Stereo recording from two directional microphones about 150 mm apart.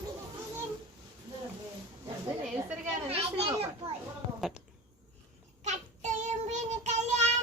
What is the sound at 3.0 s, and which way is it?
Children playing, 40° right (ahead or behind).